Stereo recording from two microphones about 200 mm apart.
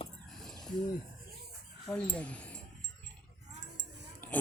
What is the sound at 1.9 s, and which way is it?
Speech, 5° left (ahead or behind).